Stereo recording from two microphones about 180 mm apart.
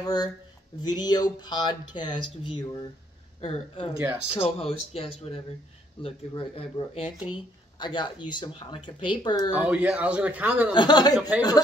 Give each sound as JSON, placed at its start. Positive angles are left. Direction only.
{"t": 0.0, "sound": "speech", "side_deg": 20}
{"t": 4.0, "sound": "a man's voice", "side_deg": -10}
{"t": 4.3, "sound": "speech", "side_deg": 35}
{"t": 9.5, "sound": "a man's voice", "side_deg": -10}
{"t": 10.7, "sound": "speech", "side_deg": 25}
{"t": 11.1, "sound": "a man's voice", "side_deg": -10}